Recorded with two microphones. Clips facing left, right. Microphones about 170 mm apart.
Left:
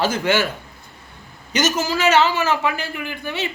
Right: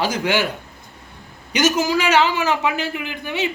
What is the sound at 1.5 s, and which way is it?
A man's voice, 10° right (ahead or behind).